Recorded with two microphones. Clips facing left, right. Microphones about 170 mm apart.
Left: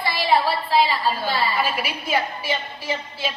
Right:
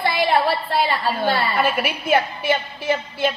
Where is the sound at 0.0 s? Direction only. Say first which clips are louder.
Right 2 dB; 55° right (ahead or behind).